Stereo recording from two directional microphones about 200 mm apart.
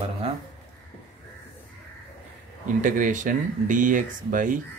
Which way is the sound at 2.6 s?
40° right (ahead or behind).